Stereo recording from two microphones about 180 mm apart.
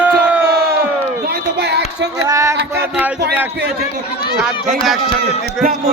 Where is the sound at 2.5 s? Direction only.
65° right (ahead or behind).